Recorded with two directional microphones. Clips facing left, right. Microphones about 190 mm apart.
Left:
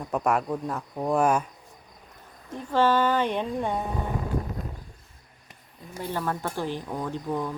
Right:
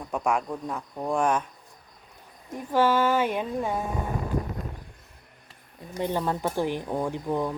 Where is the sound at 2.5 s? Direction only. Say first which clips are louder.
Even; 10° right (ahead or behind).